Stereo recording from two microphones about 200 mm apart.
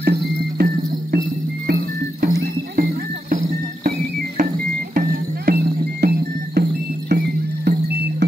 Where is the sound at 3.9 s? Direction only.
45° right (ahead or behind).